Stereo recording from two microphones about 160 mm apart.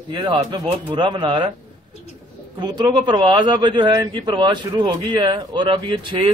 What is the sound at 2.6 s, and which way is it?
A man's voice, 25° right (ahead or behind).